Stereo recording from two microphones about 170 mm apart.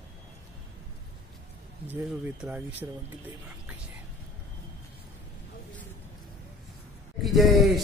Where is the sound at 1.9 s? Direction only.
10° right (ahead or behind).